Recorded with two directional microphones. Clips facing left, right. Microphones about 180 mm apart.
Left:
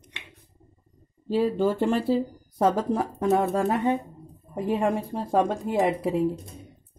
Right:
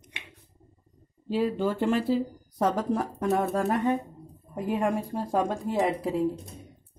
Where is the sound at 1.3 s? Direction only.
30° left (ahead or behind).